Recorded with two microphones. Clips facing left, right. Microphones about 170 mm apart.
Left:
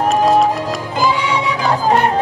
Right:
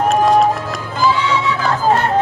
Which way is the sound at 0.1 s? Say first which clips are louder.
Even; centre (ahead or behind).